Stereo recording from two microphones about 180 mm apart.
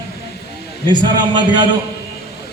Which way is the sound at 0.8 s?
25° right (ahead or behind).